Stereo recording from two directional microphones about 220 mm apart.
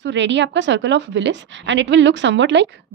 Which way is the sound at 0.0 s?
55° right (ahead or behind).